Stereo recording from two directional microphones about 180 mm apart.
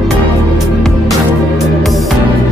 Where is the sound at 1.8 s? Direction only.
Centre (ahead or behind).